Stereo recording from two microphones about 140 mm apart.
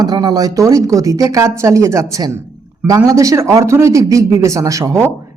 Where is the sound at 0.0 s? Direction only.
30° right (ahead or behind).